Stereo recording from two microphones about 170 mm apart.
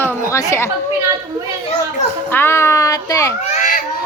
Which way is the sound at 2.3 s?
15° left (ahead or behind).